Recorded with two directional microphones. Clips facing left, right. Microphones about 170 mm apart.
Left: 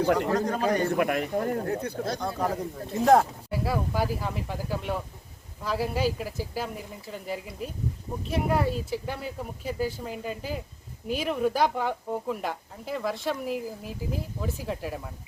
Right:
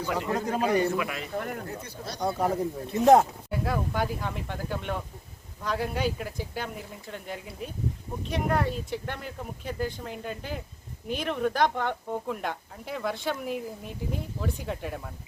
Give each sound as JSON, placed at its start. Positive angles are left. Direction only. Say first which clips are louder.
{"t": 0.0, "sound": "speech", "louder": "left 7 dB", "side_deg": 55}
{"t": 0.3, "sound": "speech", "louder": "left 2 dB", "side_deg": -5}
{"t": 0.9, "sound": "speech", "louder": "left 6 dB", "side_deg": 55}
{"t": 1.4, "sound": "speech", "louder": "left 6 dB", "side_deg": 30}
{"t": 1.6, "sound": "speech", "louder": "left 8 dB", "side_deg": 65}
{"t": 2.1, "sound": "speech", "louder": "right 2 dB", "side_deg": -15}
{"t": 3.5, "sound": "speech", "louder": "left 2 dB", "side_deg": 5}